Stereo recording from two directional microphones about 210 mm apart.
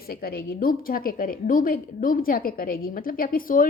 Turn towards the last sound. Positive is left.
turn(degrees=40)  # may be behind; listen again after turning